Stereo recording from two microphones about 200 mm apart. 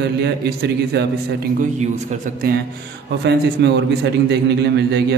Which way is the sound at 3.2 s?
55° right (ahead or behind).